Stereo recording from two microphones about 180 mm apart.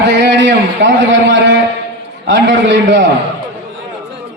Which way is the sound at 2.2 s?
90° right.